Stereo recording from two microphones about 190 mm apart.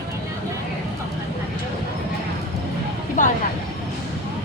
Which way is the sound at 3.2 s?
40° left (ahead or behind).